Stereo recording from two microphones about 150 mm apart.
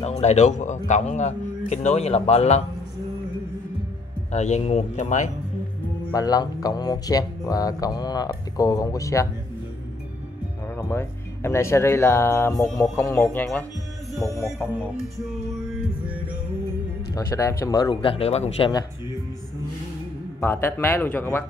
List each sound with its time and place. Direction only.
0.2 s a man's voice: 50° left (ahead or behind)
4.3 s a man's voice: 50° left (ahead or behind)
6.1 s speech: 25° left (ahead or behind)
10.8 s speech: 15° left (ahead or behind)
13.2 s speech: 5° left (ahead or behind)
17.1 s speech: 20° left (ahead or behind); by 18.7 s 45° left (ahead or behind)
20.3 s speech: 15° left (ahead or behind)